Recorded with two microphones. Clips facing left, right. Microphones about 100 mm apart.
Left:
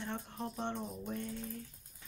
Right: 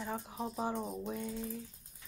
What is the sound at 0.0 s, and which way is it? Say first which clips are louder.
Speech: right 2 dB; 5° right (ahead or behind).